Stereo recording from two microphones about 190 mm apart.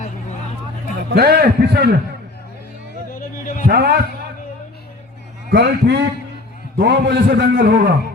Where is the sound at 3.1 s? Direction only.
45° left (ahead or behind).